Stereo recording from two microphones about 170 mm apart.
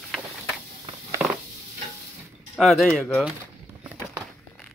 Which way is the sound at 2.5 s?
Centre (ahead or behind).